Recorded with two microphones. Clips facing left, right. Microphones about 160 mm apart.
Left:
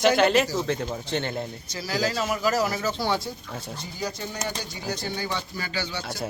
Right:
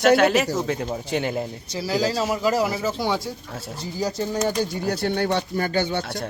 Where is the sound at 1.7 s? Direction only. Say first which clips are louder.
Right 4 dB; 30° right (ahead or behind).